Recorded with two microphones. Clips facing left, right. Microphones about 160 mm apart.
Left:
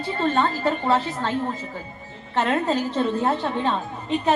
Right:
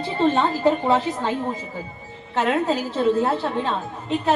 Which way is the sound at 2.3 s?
5° right (ahead or behind).